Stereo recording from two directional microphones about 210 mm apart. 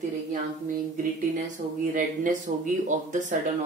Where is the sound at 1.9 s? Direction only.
40° right (ahead or behind).